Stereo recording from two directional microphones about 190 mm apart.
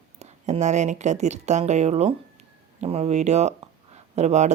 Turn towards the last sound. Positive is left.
turn(degrees=-35)  # may be behind; listen again after turning